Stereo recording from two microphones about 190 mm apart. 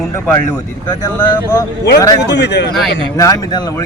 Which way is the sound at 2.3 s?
65° left (ahead or behind).